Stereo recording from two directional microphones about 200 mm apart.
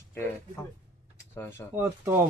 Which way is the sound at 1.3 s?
10° left (ahead or behind).